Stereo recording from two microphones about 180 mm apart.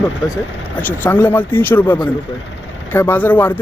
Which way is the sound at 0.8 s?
10° left (ahead or behind).